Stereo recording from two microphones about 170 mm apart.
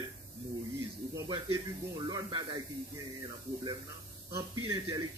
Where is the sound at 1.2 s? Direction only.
20° right (ahead or behind).